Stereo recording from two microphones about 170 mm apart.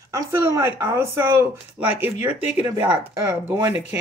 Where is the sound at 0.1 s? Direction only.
15° right (ahead or behind).